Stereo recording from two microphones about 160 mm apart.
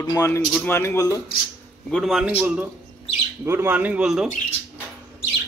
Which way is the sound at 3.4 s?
15° right (ahead or behind).